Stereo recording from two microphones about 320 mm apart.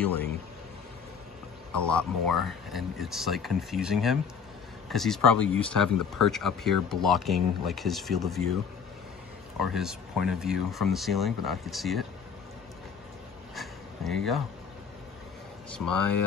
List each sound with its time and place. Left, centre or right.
0.0 s speech: centre
1.8 s speech: centre
9.6 s speech: centre
13.6 s a sound: centre
15.8 s speech: left